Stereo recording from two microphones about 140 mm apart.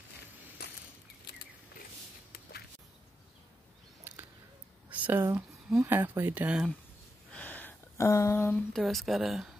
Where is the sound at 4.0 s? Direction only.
15° right (ahead or behind).